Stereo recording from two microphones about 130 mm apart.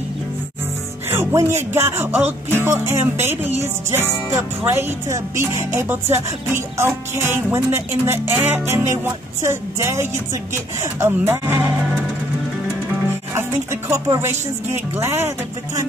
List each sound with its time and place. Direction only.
1.1 s music: 20° right (ahead or behind)
13.3 s speech: 20° right (ahead or behind)
14.0 s music: 20° right (ahead or behind)